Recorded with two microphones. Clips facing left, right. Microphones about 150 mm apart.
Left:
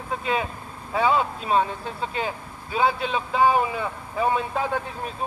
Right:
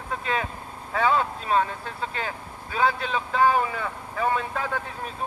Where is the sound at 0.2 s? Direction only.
15° left (ahead or behind).